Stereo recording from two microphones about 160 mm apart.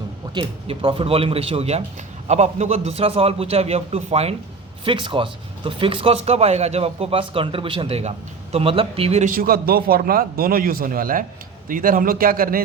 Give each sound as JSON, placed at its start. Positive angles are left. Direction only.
{"t": 0.3, "sound": "speech", "side_deg": -35}
{"t": 9.3, "sound": "a man's voice", "side_deg": -70}